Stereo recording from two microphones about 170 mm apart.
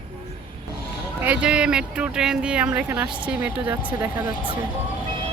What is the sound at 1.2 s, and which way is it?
Speech, 10° right (ahead or behind).